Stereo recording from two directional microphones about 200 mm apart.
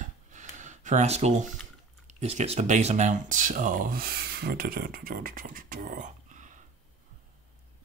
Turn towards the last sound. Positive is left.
turn(degrees=-40)  # may be behind; listen again after turning